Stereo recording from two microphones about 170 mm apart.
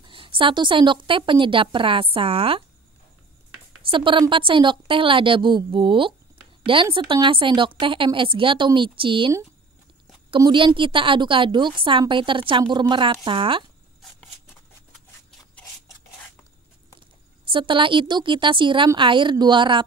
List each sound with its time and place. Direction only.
0.0 s a woman's voice: 30° right (ahead or behind)
3.9 s a woman's voice: 30° right (ahead or behind)
10.3 s a woman's voice: 30° right (ahead or behind)
17.5 s a woman's voice: 30° right (ahead or behind)